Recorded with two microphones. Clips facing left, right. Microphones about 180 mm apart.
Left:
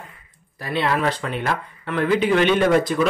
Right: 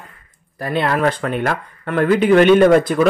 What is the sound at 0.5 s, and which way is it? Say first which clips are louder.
Speech: right 3 dB; 50° right (ahead or behind).